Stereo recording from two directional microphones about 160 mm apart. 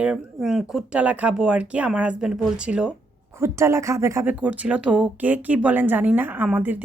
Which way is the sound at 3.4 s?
15° right (ahead or behind).